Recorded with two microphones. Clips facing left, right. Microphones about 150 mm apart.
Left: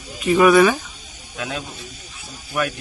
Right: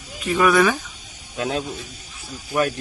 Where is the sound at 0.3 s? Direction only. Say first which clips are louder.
Left 4 dB; 5° left (ahead or behind).